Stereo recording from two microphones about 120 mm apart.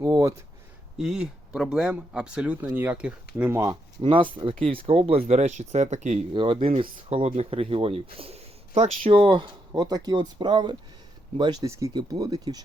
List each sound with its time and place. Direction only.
0.0 s speech: 25° right (ahead or behind)
0.9 s speech: 5° right (ahead or behind)
3.5 s speech: 25° right (ahead or behind)
4.0 s speech: 45° right (ahead or behind); by 6.2 s 75° right (ahead or behind)
6.3 s speech: 45° right (ahead or behind)
11.6 s speech: 25° right (ahead or behind)